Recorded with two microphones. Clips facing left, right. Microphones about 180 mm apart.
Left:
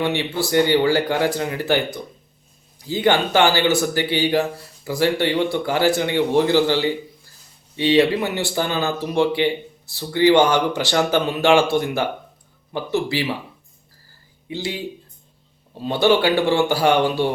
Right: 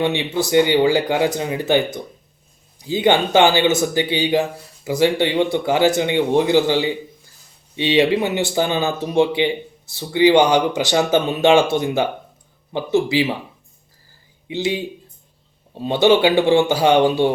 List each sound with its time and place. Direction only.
0.0 s a man's voice: 20° right (ahead or behind)
2.8 s a man's voice: 20° right (ahead or behind)
14.4 s speech: 20° right (ahead or behind)
15.9 s a man's voice: 20° right (ahead or behind)